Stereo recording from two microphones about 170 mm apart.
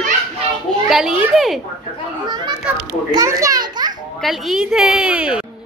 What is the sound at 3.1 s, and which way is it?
Children playing, 20° right (ahead or behind).